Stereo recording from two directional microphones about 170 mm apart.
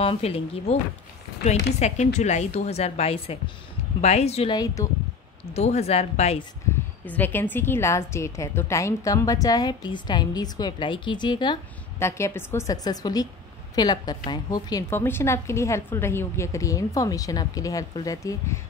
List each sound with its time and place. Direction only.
0.0 s speech: 35° left (ahead or behind)
7.1 s a woman's voice: 10° left (ahead or behind)
12.0 s a woman's voice: 15° left (ahead or behind)